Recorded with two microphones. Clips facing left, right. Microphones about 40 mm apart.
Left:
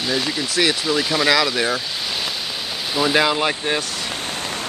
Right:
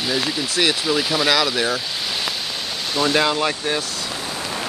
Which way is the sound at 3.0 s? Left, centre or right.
Centre.